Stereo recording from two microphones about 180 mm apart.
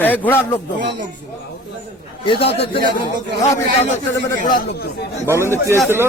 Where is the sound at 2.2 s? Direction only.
30° left (ahead or behind).